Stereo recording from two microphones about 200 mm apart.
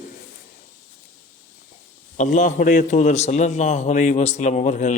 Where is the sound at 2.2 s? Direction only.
40° left (ahead or behind).